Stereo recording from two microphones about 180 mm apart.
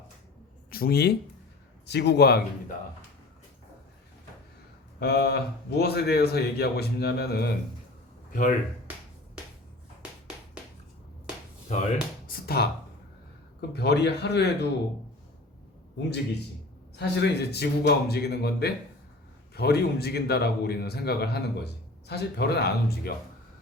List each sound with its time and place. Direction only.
0.7 s a man's voice: 60° left (ahead or behind)
4.9 s a man's voice: 60° left (ahead or behind)
8.3 s speech: 45° left (ahead or behind)
11.7 s speech: 40° left (ahead or behind)
12.6 s a man's voice: 60° left (ahead or behind)
17.0 s a man's voice: 70° left (ahead or behind)